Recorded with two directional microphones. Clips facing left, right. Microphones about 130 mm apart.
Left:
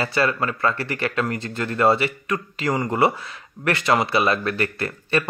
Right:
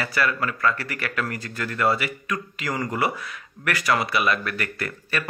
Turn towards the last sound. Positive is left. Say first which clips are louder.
# left 6 dB
turn(degrees=30)  # may be behind; listen again after turning